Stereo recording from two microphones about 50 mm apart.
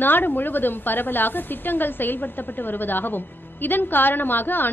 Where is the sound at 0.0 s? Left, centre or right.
Left.